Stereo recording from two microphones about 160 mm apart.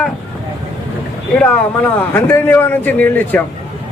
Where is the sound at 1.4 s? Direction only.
10° left (ahead or behind).